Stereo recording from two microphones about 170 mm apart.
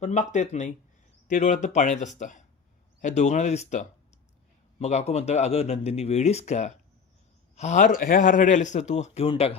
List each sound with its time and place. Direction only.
0.0 s a man's voice: 45° left (ahead or behind)